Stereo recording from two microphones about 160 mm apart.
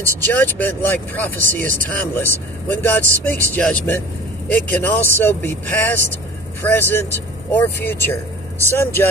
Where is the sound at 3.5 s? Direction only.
10° left (ahead or behind).